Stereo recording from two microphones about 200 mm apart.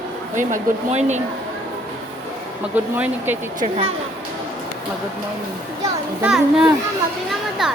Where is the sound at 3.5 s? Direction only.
30° right (ahead or behind).